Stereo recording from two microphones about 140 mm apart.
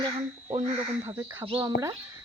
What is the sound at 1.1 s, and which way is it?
Speech, 20° right (ahead or behind).